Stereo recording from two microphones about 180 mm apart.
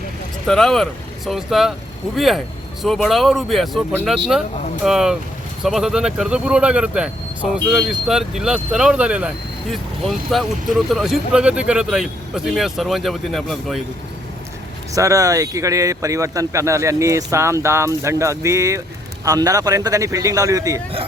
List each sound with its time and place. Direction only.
0.4 s speech: centre (ahead or behind)
14.9 s speech: 20° right (ahead or behind)